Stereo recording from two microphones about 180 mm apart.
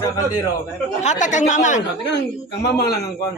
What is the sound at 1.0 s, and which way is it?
Speech, 40° left (ahead or behind).